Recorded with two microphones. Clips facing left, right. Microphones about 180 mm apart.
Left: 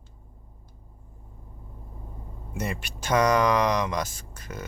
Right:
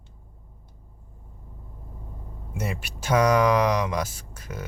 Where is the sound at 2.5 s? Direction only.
10° right (ahead or behind).